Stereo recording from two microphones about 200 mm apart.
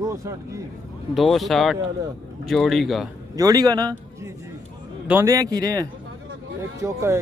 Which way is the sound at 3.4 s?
15° right (ahead or behind).